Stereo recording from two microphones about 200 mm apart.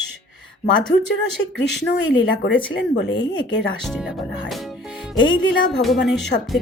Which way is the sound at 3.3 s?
20° left (ahead or behind).